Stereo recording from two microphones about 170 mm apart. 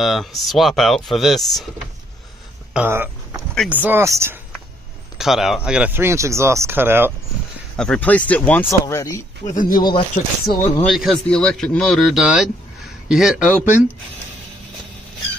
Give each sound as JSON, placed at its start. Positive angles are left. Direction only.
{"t": 0.0, "sound": "speech", "side_deg": 0}
{"t": 2.7, "sound": "a sound", "side_deg": -10}
{"t": 3.6, "sound": "speech", "side_deg": -10}
{"t": 5.1, "sound": "speech", "side_deg": 0}
{"t": 7.7, "sound": "speech", "side_deg": 5}
{"t": 9.4, "sound": "speech", "side_deg": 50}
{"t": 9.8, "sound": "speech", "side_deg": 25}
{"t": 10.1, "sound": "speech", "side_deg": 60}
{"t": 10.6, "sound": "speech", "side_deg": 15}
{"t": 10.9, "sound": "speech", "side_deg": 0}